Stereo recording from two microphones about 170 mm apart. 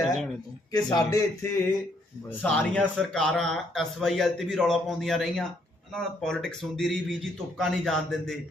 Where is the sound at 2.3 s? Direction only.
5° left (ahead or behind).